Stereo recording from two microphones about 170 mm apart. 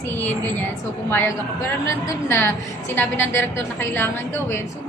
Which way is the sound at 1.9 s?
15° left (ahead or behind).